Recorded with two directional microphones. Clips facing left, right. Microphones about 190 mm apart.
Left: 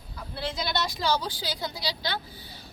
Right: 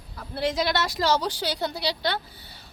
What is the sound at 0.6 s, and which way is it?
A woman's voice, 90° right.